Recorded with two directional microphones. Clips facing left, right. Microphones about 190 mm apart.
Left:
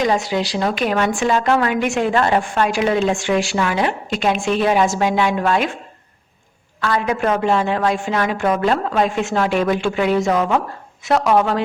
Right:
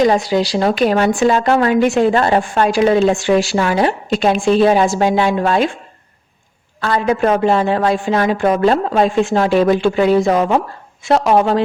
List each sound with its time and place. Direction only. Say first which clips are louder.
0.0 s speech: right 5 dB; 35° right (ahead or behind)
6.8 s speech: right 4 dB; 30° right (ahead or behind)